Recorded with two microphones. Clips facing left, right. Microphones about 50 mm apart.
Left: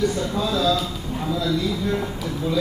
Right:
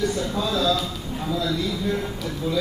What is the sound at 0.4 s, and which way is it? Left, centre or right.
Speech, centre.